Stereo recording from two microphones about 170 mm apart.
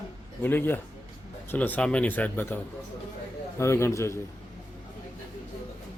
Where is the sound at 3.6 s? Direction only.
15° left (ahead or behind).